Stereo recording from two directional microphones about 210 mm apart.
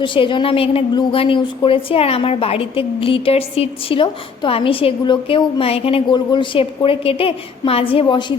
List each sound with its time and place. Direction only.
0.0 s a woman's voice: 25° left (ahead or behind)